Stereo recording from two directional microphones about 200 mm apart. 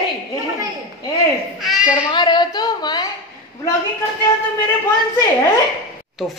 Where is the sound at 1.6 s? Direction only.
5° right (ahead or behind).